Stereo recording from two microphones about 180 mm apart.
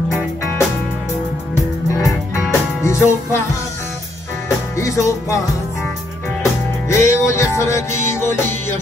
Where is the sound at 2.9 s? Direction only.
15° left (ahead or behind).